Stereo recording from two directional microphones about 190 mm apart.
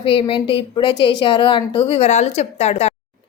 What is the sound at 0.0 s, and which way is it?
A woman's voice, 30° left (ahead or behind).